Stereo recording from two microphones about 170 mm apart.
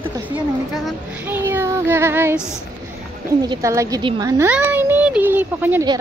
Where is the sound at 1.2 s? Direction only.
10° right (ahead or behind).